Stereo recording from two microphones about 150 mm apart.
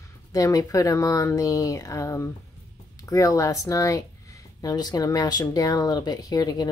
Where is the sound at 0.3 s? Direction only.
25° left (ahead or behind).